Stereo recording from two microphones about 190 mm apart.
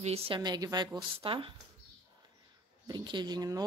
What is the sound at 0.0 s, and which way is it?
A woman's voice, 30° right (ahead or behind).